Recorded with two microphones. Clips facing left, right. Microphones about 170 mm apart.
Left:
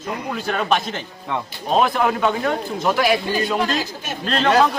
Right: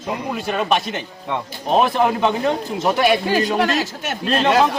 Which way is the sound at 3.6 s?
75° right (ahead or behind).